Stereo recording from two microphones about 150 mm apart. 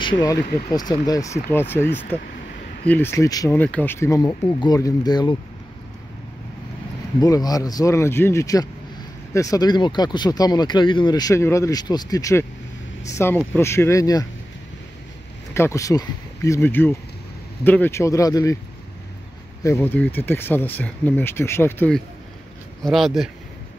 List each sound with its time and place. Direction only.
0.0 s speech: 25° left (ahead or behind)
1.5 s speech: 15° left (ahead or behind)
3.5 s speech: 10° left (ahead or behind); by 5.3 s 25° left (ahead or behind)
7.2 s speech: 25° left (ahead or behind)
15.5 s speech: 20° left (ahead or behind)
19.6 s speech: 15° left (ahead or behind)
22.8 s speech: centre (ahead or behind)